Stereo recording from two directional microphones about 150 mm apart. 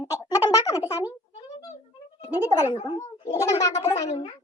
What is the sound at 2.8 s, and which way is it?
Speech, 30° left (ahead or behind).